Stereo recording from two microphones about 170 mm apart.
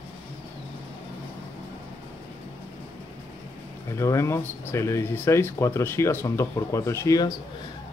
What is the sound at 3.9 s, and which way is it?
Speech, 15° left (ahead or behind).